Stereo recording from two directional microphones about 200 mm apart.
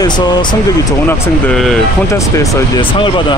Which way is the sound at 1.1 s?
5° left (ahead or behind).